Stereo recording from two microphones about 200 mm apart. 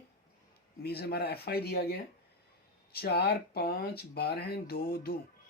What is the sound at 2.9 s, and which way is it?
Speech, 50° left (ahead or behind).